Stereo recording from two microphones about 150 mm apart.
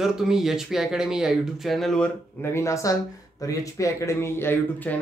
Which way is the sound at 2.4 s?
20° left (ahead or behind).